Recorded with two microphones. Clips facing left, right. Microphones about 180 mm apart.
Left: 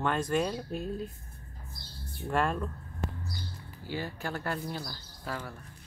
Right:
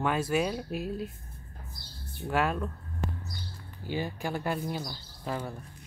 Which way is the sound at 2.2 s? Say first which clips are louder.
Right 1 dB; 5° right (ahead or behind).